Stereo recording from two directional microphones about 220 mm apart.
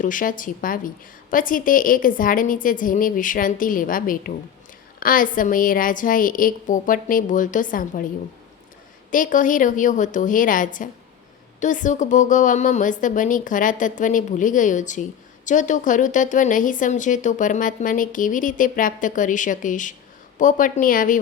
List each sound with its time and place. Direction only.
0.0 s speech: 35° left (ahead or behind)
9.0 s speech: 35° left (ahead or behind)